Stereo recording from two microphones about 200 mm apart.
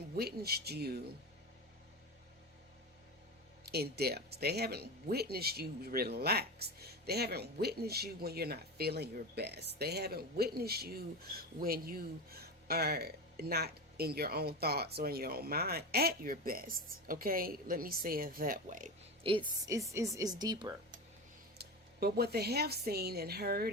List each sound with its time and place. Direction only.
0.2 s speech: 50° right (ahead or behind)
3.7 s speech: 50° right (ahead or behind)
19.2 s a woman's voice: 25° right (ahead or behind)
21.6 s speech: 50° right (ahead or behind)